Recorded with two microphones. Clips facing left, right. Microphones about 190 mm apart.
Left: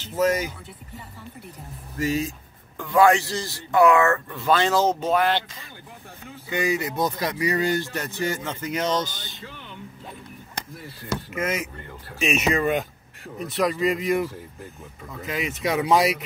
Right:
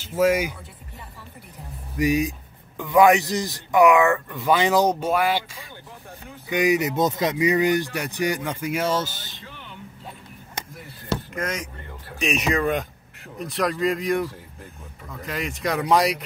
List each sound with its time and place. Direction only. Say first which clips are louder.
0.0 s speech: right 2 dB; 10° right (ahead or behind)
2.0 s speech: right 4 dB; 15° right (ahead or behind)
11.3 s speech: left 2 dB; 5° left (ahead or behind)